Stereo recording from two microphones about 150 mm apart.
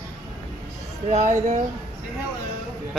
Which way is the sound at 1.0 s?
55° right (ahead or behind).